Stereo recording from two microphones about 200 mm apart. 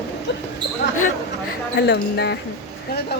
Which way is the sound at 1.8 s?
55° left (ahead or behind).